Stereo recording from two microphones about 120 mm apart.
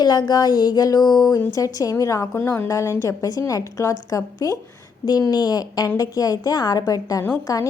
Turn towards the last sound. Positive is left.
turn(degrees=30)  # may be behind; listen again after turning